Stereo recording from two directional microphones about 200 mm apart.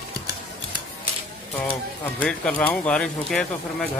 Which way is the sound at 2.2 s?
5° left (ahead or behind).